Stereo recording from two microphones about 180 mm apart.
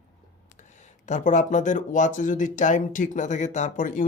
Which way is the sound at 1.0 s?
45° left (ahead or behind).